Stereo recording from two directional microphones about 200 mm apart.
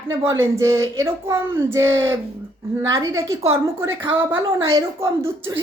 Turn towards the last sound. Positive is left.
turn(degrees=-10)  # may be behind; listen again after turning